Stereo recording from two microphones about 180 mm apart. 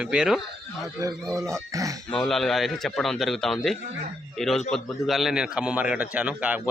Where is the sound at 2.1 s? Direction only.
Centre (ahead or behind).